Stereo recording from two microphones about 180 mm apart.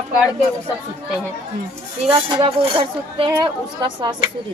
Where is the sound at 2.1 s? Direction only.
30° right (ahead or behind).